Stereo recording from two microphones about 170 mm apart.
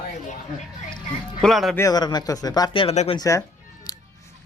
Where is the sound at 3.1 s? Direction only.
20° left (ahead or behind).